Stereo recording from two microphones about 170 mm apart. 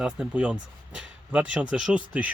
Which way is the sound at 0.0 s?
5° right (ahead or behind).